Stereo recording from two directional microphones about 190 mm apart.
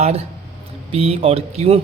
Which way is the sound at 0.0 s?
35° right (ahead or behind).